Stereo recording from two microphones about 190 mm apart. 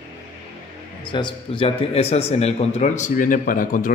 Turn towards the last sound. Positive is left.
turn(degrees=45)  # may be behind; listen again after turning